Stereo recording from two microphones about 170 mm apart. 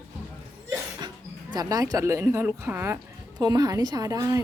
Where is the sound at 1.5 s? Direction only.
20° right (ahead or behind).